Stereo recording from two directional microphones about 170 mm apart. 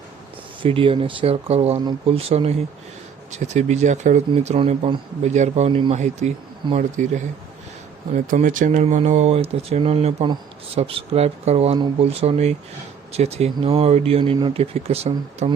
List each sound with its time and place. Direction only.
0.6 s speech: 30° right (ahead or behind)